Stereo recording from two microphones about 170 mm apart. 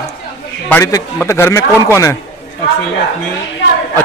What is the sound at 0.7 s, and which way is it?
A man's voice, 20° left (ahead or behind).